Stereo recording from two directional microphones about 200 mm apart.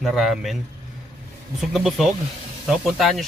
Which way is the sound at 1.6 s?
Centre (ahead or behind).